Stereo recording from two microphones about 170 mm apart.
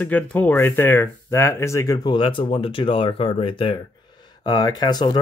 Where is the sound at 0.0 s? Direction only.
10° left (ahead or behind).